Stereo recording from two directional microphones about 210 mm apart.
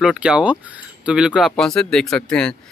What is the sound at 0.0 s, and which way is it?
Speech, 5° right (ahead or behind).